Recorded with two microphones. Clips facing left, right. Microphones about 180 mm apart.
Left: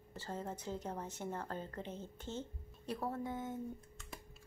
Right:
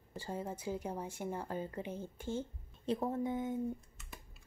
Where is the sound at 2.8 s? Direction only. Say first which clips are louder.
Right 5 dB; 20° right (ahead or behind).